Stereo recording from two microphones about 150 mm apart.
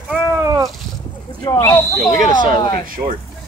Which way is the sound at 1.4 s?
20° left (ahead or behind).